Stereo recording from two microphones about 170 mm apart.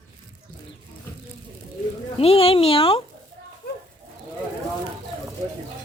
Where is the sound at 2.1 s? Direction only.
35° left (ahead or behind).